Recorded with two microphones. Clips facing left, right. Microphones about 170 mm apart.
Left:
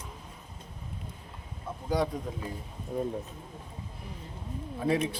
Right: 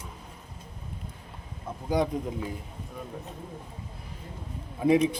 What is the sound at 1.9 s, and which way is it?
Speech, 20° right (ahead or behind).